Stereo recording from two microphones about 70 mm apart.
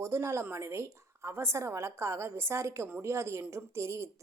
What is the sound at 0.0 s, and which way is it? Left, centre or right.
A woman's voice, right.